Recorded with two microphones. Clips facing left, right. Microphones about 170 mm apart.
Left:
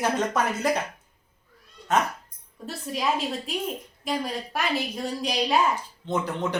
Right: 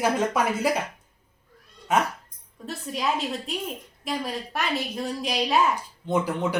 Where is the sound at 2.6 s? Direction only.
Centre (ahead or behind).